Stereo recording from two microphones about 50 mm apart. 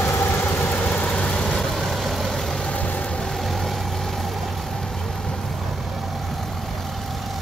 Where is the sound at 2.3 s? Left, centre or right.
Centre.